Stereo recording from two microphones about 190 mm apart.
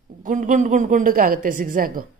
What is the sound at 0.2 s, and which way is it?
A woman's voice, 40° right (ahead or behind).